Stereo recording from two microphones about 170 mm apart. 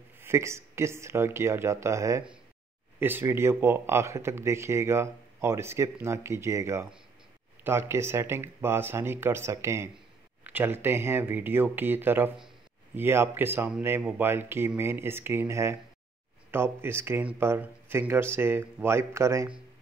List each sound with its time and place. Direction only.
0.2 s speech: 15° right (ahead or behind)